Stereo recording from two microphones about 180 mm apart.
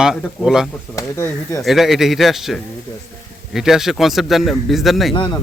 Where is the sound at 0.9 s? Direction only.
15° left (ahead or behind).